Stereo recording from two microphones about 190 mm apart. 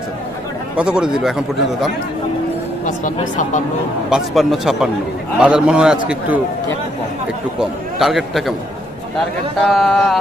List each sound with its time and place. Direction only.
0.7 s a man's voice: 5° right (ahead or behind)
2.8 s speech: 40° left (ahead or behind)
4.1 s a man's voice: centre (ahead or behind)
7.5 s a man's voice: centre (ahead or behind)
9.6 s a man's voice: centre (ahead or behind)